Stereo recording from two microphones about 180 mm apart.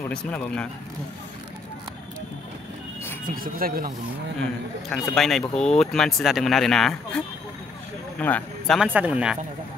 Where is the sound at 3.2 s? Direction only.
50° right (ahead or behind).